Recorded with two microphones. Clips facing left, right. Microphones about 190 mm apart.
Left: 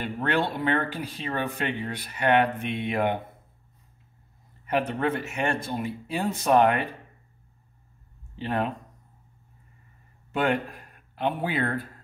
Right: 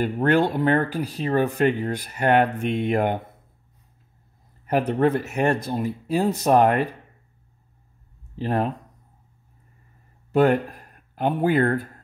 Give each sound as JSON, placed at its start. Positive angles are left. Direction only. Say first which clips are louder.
{"t": 0.0, "sound": "speech", "louder": "right 7 dB", "side_deg": -40}
{"t": 4.6, "sound": "speech", "louder": "right 5 dB", "side_deg": -40}
{"t": 8.4, "sound": "speech", "louder": "right 4 dB", "side_deg": -40}
{"t": 10.3, "sound": "speech", "louder": "right 7 dB", "side_deg": -40}